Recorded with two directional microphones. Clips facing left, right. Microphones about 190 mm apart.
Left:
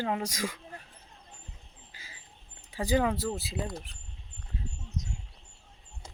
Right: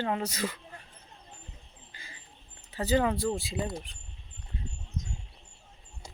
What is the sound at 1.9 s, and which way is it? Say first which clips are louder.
Cricket: right 2 dB; 5° left (ahead or behind).